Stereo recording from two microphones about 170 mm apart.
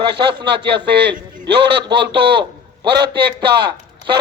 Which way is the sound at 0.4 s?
80° right.